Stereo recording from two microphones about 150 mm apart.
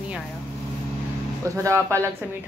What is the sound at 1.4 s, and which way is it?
Speech, 20° right (ahead or behind).